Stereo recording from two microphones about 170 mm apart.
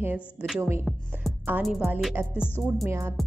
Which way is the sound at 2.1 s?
10° right (ahead or behind).